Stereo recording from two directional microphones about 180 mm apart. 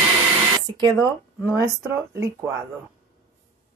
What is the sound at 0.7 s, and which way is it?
Speech, 25° right (ahead or behind).